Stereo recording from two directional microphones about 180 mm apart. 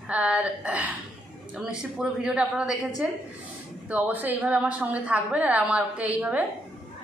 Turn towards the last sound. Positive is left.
turn(degrees=-10)  # may be behind; listen again after turning